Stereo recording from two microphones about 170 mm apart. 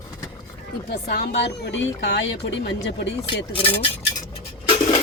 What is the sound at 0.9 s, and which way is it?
Speech, 70° left (ahead or behind).